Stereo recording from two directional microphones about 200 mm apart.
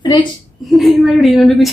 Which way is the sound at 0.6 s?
Centre (ahead or behind).